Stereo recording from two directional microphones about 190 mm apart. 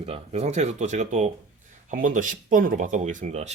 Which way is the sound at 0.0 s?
35° right (ahead or behind).